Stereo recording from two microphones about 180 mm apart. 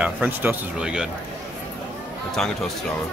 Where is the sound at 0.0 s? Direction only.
10° right (ahead or behind).